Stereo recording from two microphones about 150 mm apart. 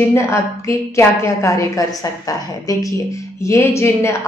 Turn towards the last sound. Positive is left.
turn(degrees=20)  # may be behind; listen again after turning